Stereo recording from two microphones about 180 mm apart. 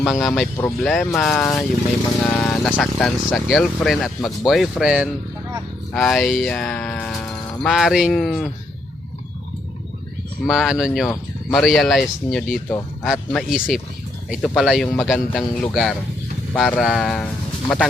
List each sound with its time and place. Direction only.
0.0 s speech: centre (ahead or behind)
10.4 s speech: 5° right (ahead or behind)
15.7 s speech: 5° right (ahead or behind)